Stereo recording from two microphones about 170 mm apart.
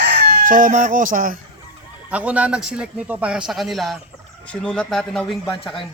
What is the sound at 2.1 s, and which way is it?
A man's voice, 10° right (ahead or behind).